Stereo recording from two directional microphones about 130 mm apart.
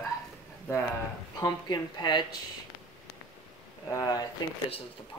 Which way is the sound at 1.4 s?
35° left (ahead or behind).